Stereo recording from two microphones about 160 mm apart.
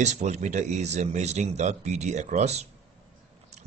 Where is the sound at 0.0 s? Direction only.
45° right (ahead or behind).